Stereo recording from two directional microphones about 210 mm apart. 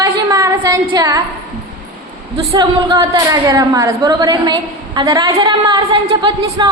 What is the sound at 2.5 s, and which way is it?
A woman's voice, 15° right (ahead or behind).